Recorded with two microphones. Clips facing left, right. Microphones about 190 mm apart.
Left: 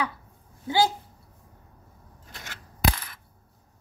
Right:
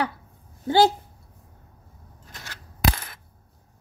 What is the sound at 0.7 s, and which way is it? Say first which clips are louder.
Speech: right 5 dB; 65° right (ahead or behind).